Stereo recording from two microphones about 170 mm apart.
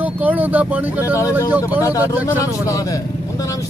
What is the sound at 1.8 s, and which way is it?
Speech, 20° left (ahead or behind).